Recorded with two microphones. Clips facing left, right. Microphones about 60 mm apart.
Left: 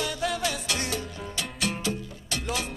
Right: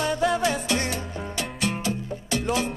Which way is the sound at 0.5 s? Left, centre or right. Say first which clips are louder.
Right 5 dB; right.